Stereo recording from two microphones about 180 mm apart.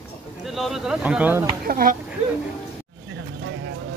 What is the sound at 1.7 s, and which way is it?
Speech, 55° right (ahead or behind).